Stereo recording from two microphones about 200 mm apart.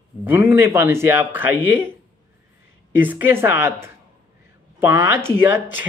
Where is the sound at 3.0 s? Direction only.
10° right (ahead or behind).